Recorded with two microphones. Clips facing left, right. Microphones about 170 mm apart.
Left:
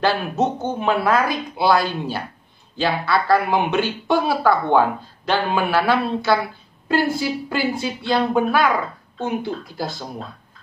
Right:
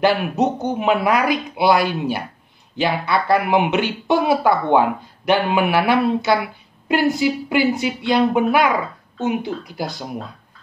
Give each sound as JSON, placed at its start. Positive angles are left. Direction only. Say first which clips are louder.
{"t": 0.0, "sound": "speech", "louder": "right 3 dB", "side_deg": -20}